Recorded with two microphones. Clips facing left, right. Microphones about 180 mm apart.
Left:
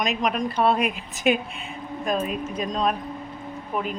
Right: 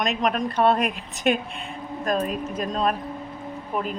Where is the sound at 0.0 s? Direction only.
Centre (ahead or behind).